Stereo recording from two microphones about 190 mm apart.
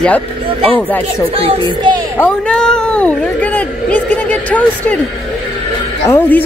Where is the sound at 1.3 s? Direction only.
30° right (ahead or behind).